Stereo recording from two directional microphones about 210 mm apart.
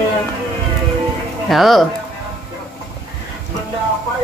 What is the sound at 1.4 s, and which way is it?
Speech, centre (ahead or behind).